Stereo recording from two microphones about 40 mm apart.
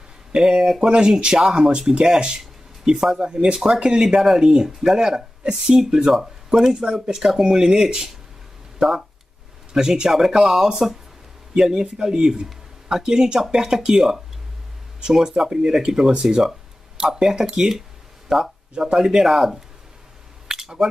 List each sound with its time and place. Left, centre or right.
0.3 s speech: centre
9.8 s speech: centre
20.4 s a sound: centre